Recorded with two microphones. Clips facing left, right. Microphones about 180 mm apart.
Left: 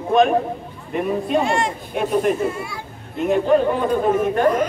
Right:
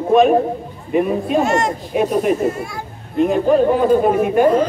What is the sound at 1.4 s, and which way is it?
A child's voice, 45° right (ahead or behind).